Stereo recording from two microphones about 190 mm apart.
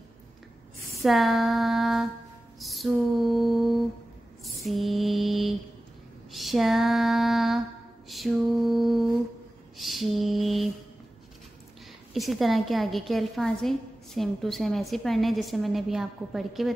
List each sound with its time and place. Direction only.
1.0 s a woman's voice: centre (ahead or behind)
4.6 s mantra: centre (ahead or behind)
6.3 s female singing: centre (ahead or behind)
8.1 s mantra: centre (ahead or behind)
12.1 s a woman's voice: centre (ahead or behind)